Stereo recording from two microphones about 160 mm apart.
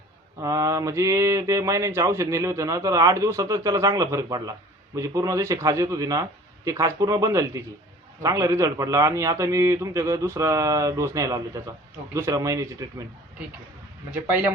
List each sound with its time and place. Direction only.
0.3 s speech: 20° right (ahead or behind)
14.1 s speech: 10° right (ahead or behind)